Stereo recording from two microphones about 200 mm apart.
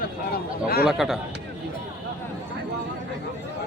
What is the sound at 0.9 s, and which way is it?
Speech, centre (ahead or behind).